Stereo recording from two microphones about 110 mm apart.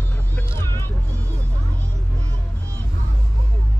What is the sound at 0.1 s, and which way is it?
Vehicle, 15° left (ahead or behind).